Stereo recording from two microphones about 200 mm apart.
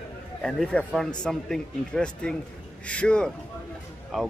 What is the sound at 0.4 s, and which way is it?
Speech, 5° left (ahead or behind).